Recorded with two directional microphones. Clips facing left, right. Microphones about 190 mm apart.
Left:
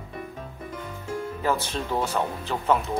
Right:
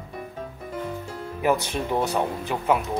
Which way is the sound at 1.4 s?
15° right (ahead or behind).